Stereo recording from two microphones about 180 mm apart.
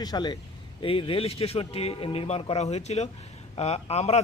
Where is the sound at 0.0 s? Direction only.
25° left (ahead or behind).